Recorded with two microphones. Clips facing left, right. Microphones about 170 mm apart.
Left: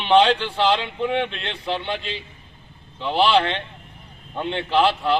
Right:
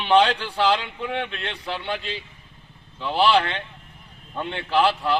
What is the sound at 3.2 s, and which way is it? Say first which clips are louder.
Speech: left 1 dB; 25° left (ahead or behind).